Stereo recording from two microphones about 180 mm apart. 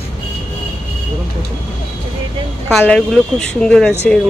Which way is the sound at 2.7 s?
5° left (ahead or behind).